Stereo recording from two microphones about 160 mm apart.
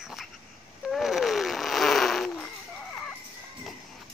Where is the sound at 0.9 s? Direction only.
Centre (ahead or behind).